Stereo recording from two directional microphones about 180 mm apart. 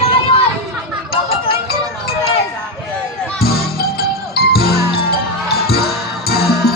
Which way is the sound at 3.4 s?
60° left (ahead or behind).